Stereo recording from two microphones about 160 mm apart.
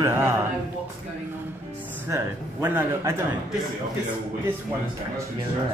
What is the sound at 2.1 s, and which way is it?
A man's voice, 15° right (ahead or behind).